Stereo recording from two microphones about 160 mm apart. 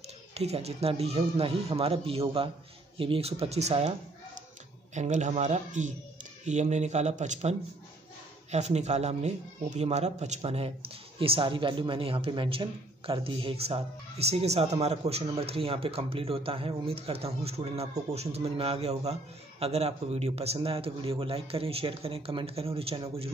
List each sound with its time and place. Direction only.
0.3 s speech: 40° right (ahead or behind)
4.9 s speech: 50° right (ahead or behind)